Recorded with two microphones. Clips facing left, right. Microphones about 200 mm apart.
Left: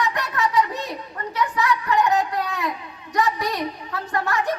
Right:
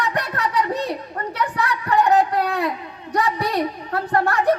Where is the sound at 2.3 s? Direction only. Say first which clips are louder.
Right 5 dB; 60° right (ahead or behind).